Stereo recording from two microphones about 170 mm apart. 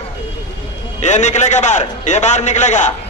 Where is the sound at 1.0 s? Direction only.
45° left (ahead or behind).